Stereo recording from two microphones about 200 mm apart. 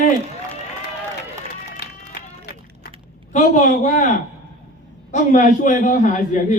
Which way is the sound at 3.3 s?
40° left (ahead or behind).